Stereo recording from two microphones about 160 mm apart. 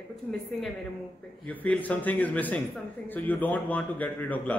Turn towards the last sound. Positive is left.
turn(degrees=10)  # may be behind; listen again after turning